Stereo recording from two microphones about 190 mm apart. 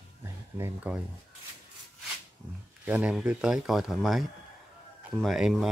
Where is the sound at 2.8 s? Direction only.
10° right (ahead or behind).